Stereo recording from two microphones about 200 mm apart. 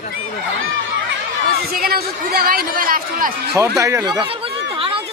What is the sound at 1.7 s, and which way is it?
Speech, 50° right (ahead or behind).